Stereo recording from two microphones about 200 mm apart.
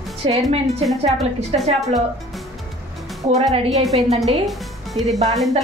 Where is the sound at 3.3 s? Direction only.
30° right (ahead or behind).